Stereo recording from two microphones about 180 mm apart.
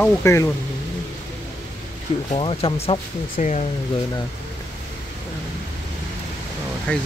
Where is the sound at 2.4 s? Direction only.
30° left (ahead or behind).